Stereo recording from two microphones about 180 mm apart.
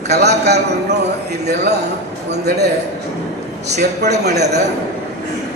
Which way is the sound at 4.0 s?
65° right (ahead or behind).